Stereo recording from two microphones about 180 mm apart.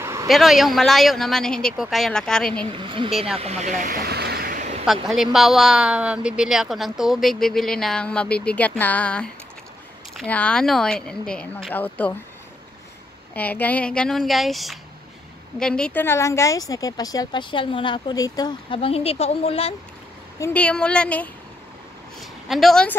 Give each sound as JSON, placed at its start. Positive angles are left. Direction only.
{"t": 0.0, "sound": "a sound", "side_deg": -15}
{"t": 0.3, "sound": "speech", "side_deg": 0}
{"t": 2.6, "sound": "speech", "side_deg": -30}
{"t": 3.1, "sound": "speech", "side_deg": 0}
{"t": 3.3, "sound": "vehicle", "side_deg": -35}
{"t": 4.8, "sound": "speech", "side_deg": 0}
{"t": 13.3, "sound": "a woman's voice", "side_deg": 10}
{"t": 20.3, "sound": "a woman's voice", "side_deg": 10}